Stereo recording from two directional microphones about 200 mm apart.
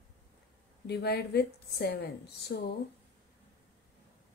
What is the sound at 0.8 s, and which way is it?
A woman's voice, 55° left (ahead or behind).